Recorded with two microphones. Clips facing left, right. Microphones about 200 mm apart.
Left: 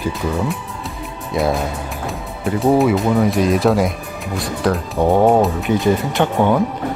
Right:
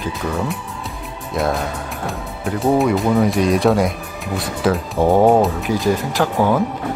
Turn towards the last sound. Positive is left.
turn(degrees=0)  # may be behind; listen again after turning